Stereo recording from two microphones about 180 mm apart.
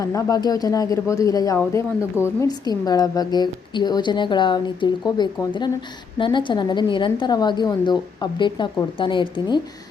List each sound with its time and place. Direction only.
0.0 s a woman's voice: 20° left (ahead or behind)